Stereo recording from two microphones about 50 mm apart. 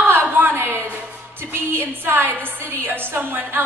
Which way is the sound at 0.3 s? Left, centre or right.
Right.